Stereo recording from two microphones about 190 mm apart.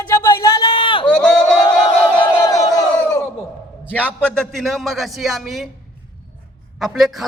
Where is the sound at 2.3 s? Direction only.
15° left (ahead or behind).